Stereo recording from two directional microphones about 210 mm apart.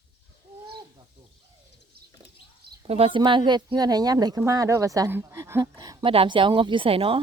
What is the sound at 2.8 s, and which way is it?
Speech, 30° right (ahead or behind).